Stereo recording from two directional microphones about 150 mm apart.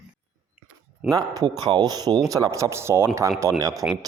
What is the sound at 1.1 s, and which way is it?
A man's voice, 25° right (ahead or behind).